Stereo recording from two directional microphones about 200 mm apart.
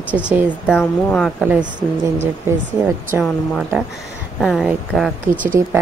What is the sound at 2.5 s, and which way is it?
Speech, 10° right (ahead or behind).